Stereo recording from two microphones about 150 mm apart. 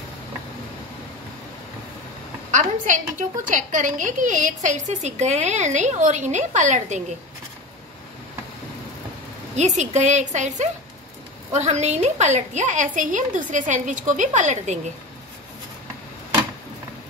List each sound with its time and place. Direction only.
2.5 s a woman's voice: 60° right (ahead or behind)
9.6 s a woman's voice: 50° right (ahead or behind)